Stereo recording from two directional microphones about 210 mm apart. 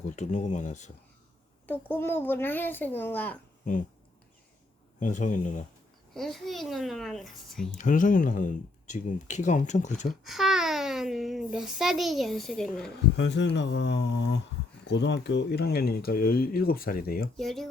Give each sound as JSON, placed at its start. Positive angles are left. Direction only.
{"t": 0.2, "sound": "speech", "side_deg": 35}
{"t": 1.6, "sound": "a child's voice", "side_deg": 10}
{"t": 4.9, "sound": "speech", "side_deg": 35}
{"t": 6.1, "sound": "a child's voice", "side_deg": 0}
{"t": 7.7, "sound": "speech", "side_deg": 35}
{"t": 10.2, "sound": "a child's voice", "side_deg": 0}
{"t": 13.1, "sound": "speech", "side_deg": 55}
{"t": 17.3, "sound": "a child's voice", "side_deg": 0}